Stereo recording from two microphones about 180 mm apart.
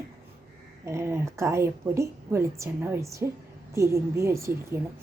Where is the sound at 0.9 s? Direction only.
15° right (ahead or behind).